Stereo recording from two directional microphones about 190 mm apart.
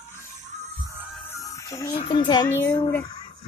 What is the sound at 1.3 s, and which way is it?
Music, 15° left (ahead or behind).